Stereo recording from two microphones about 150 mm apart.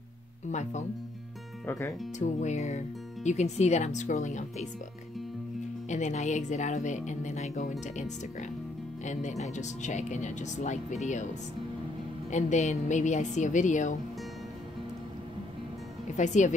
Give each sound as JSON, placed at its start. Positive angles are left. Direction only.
{"t": 0.5, "sound": "speech", "side_deg": 50}
{"t": 1.7, "sound": "speech", "side_deg": 15}
{"t": 2.1, "sound": "speech", "side_deg": 50}
{"t": 5.9, "sound": "speech", "side_deg": 50}
{"t": 12.3, "sound": "a woman's voice", "side_deg": 50}
{"t": 16.2, "sound": "a woman's voice", "side_deg": 55}